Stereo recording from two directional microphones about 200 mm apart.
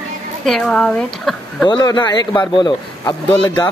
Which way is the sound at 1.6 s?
20° left (ahead or behind).